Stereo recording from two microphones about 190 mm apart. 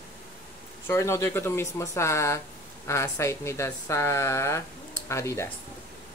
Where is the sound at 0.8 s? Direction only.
15° left (ahead or behind).